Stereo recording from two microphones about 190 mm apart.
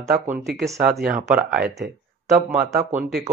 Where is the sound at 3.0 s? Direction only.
Centre (ahead or behind).